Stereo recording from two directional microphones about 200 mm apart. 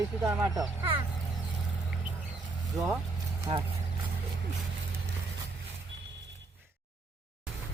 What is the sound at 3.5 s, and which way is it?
Speech, 25° right (ahead or behind).